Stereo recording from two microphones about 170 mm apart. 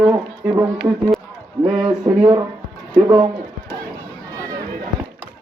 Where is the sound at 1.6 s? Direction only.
5° right (ahead or behind).